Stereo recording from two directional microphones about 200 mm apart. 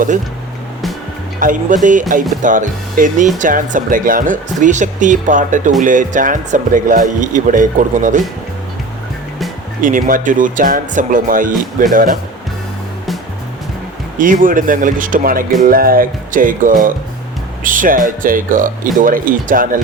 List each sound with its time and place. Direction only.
1.4 s speech: 40° right (ahead or behind)
9.8 s speech: 40° right (ahead or behind)
14.2 s speech: 40° right (ahead or behind)